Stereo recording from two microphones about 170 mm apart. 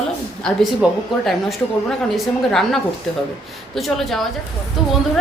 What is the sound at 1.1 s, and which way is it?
Speech, centre (ahead or behind).